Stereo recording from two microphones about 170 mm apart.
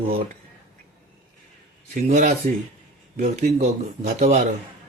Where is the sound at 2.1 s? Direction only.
45° right (ahead or behind).